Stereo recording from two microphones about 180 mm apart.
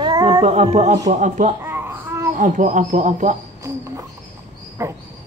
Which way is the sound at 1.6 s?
15° right (ahead or behind).